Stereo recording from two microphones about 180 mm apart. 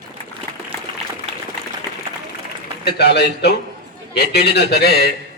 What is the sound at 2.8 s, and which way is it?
A man's voice, 65° left (ahead or behind).